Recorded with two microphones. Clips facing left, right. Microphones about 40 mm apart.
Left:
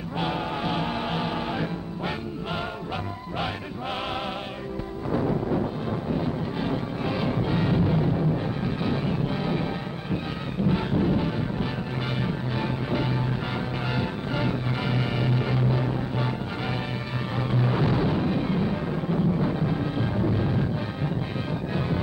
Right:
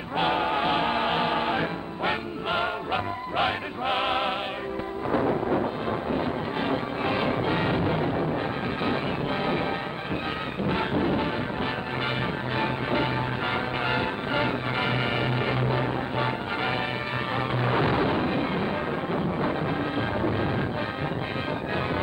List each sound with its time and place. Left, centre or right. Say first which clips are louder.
0.2 s music: right 4 dB; right
5.3 s music: right 1 dB; centre
10.7 s a sound: even; right
12.5 s music: right 3 dB; right
17.6 s music: even; right